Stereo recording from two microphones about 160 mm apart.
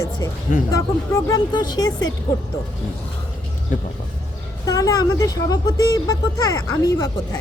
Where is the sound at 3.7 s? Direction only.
55° left (ahead or behind).